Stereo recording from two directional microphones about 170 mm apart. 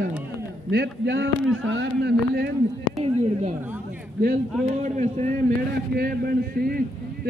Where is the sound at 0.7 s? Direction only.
85° right.